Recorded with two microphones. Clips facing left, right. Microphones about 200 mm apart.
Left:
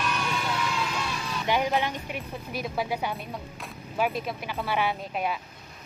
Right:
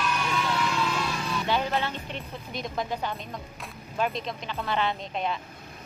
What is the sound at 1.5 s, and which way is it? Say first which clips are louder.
A woman's voice: left 3 dB; 15° left (ahead or behind).